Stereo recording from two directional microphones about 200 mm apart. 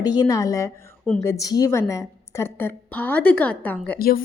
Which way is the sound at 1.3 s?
15° left (ahead or behind).